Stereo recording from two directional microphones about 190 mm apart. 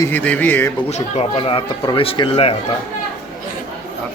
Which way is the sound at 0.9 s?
35° left (ahead or behind).